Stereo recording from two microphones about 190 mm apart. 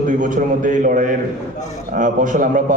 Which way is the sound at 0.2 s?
45° right (ahead or behind).